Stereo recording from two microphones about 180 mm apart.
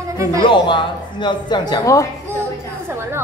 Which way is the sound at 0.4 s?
25° left (ahead or behind).